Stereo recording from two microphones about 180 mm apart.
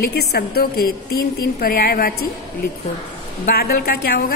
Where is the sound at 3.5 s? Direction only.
60° left (ahead or behind).